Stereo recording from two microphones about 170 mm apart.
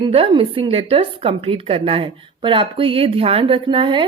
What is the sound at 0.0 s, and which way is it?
A woman's voice, 35° right (ahead or behind).